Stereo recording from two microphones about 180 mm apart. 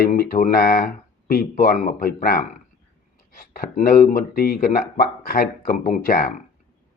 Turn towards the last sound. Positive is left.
turn(degrees=55)  # may be behind; listen again after turning